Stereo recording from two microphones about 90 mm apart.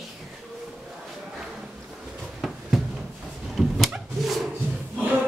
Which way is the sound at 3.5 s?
Centre (ahead or behind).